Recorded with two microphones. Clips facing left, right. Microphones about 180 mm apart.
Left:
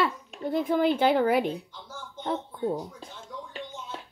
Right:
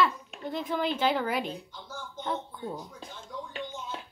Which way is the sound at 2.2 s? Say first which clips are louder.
Left 5 dB; 35° left (ahead or behind).